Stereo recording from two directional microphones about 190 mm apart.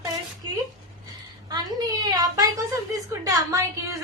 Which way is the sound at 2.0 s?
20° right (ahead or behind).